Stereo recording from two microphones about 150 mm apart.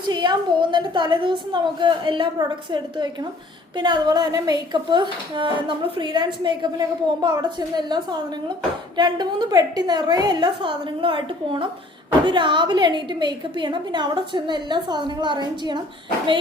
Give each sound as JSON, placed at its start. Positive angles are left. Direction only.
{"t": 0.1, "sound": "a woman's voice", "side_deg": -30}